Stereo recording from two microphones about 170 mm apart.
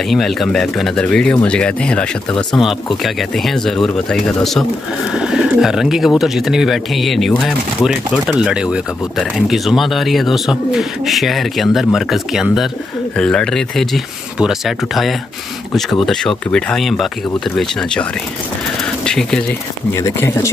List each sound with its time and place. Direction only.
0.1 s speech: centre (ahead or behind)
19.0 s speech: 5° left (ahead or behind)
19.9 s speech: 15° left (ahead or behind)